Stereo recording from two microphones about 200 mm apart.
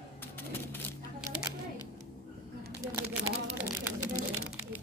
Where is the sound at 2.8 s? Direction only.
15° right (ahead or behind).